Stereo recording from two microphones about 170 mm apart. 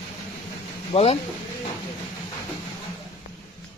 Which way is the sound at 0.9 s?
40° left (ahead or behind).